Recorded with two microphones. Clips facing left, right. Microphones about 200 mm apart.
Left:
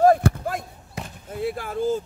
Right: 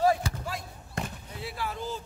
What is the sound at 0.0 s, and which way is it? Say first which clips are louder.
Basketball bounce: left 8 dB; 50° left (ahead or behind).